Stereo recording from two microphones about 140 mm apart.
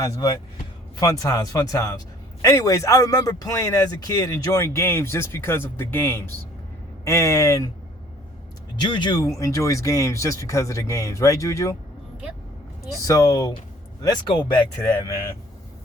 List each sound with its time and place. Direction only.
0.0 s a man's voice: 25° left (ahead or behind)
8.9 s speech: 35° left (ahead or behind)
9.4 s a man's voice: 25° left (ahead or behind)
13.1 s a man's voice: 25° left (ahead or behind)